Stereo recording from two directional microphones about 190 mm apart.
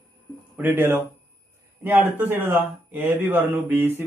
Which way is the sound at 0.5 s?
10° right (ahead or behind).